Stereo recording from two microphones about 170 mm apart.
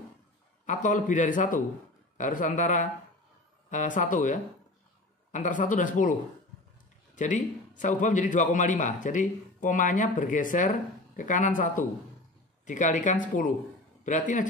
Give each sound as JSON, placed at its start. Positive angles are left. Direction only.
{"t": 0.7, "sound": "a man's voice", "side_deg": 50}
{"t": 7.2, "sound": "a man's voice", "side_deg": 45}